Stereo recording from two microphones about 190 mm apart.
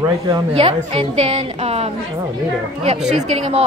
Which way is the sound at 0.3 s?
30° right (ahead or behind).